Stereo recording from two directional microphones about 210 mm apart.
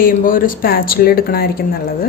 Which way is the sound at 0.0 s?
40° left (ahead or behind).